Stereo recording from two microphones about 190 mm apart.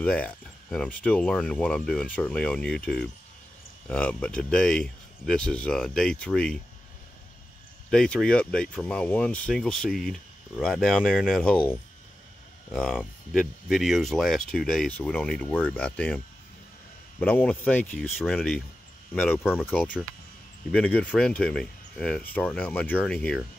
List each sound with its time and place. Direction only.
0.0 s speech: 5° left (ahead or behind)
7.9 s speech: 5° left (ahead or behind)
12.7 s speech: centre (ahead or behind)
17.2 s speech: 10° left (ahead or behind)